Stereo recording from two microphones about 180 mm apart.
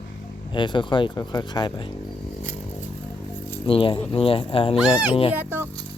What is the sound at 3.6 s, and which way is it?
Speech, 30° left (ahead or behind).